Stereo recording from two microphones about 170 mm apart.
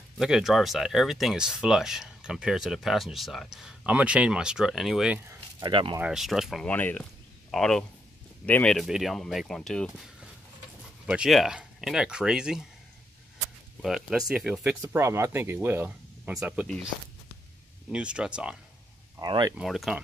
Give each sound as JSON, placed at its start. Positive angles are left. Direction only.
{"t": 0.2, "sound": "speech", "side_deg": 0}
{"t": 5.3, "sound": "speech", "side_deg": -25}
{"t": 5.9, "sound": "speech", "side_deg": -5}
{"t": 6.7, "sound": "speech", "side_deg": 10}
{"t": 11.1, "sound": "speech", "side_deg": -5}
{"t": 13.8, "sound": "speech", "side_deg": 0}
{"t": 17.9, "sound": "speech", "side_deg": -5}
{"t": 19.2, "sound": "speech", "side_deg": -25}
{"t": 19.5, "sound": "speech", "side_deg": 0}